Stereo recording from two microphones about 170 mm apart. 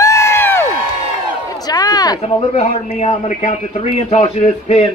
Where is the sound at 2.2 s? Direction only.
40° left (ahead or behind).